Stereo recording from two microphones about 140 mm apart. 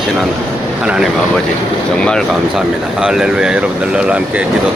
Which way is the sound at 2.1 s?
5° left (ahead or behind).